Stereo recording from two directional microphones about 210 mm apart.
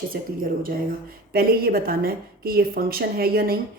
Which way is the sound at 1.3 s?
45° right (ahead or behind).